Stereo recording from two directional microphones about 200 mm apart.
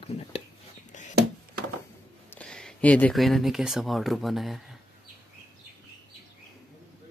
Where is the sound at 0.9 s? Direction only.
40° left (ahead or behind).